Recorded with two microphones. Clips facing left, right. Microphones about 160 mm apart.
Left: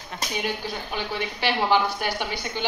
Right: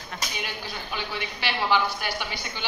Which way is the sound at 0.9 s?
45° left (ahead or behind).